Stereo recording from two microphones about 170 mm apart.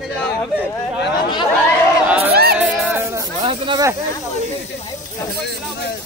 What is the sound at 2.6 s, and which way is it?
Speech, centre (ahead or behind).